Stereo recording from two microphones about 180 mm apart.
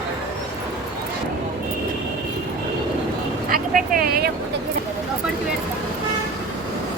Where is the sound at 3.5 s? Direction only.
50° right (ahead or behind).